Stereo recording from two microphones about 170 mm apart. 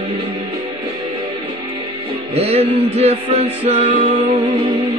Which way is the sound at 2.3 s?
40° right (ahead or behind).